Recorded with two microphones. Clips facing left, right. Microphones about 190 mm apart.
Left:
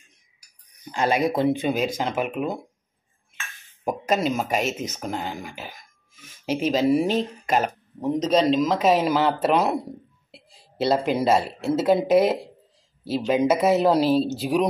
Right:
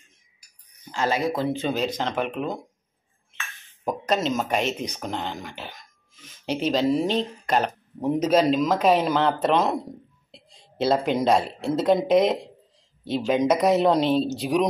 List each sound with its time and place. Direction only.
0.9 s speech: 15° left (ahead or behind)
3.8 s speech: 10° left (ahead or behind)
8.0 s speech: 10° right (ahead or behind)